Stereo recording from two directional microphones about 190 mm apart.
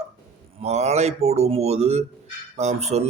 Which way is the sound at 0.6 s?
35° right (ahead or behind).